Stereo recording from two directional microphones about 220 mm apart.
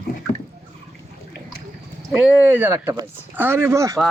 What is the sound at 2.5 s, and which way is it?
Speech, 10° right (ahead or behind).